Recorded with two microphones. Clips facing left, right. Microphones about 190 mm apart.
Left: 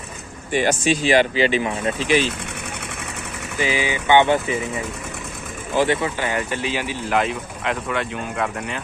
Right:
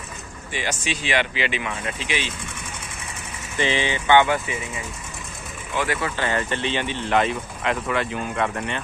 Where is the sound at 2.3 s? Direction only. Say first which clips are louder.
Left 4 dB; 65° left (ahead or behind).